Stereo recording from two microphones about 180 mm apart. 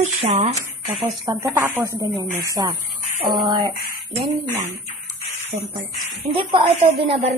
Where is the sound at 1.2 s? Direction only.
15° right (ahead or behind).